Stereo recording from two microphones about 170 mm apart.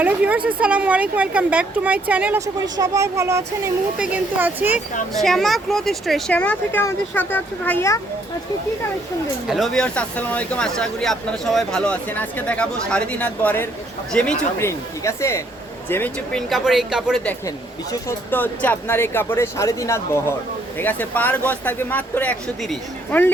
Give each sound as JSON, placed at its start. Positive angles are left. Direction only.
{"t": 0.0, "sound": "a woman's voice", "side_deg": -10}
{"t": 2.7, "sound": "a woman's voice", "side_deg": -20}
{"t": 5.1, "sound": "speech", "side_deg": 0}
{"t": 9.5, "sound": "speech", "side_deg": 0}
{"t": 14.6, "sound": "speech", "side_deg": 15}
{"t": 16.5, "sound": "speech", "side_deg": 0}
{"t": 17.9, "sound": "speech", "side_deg": 10}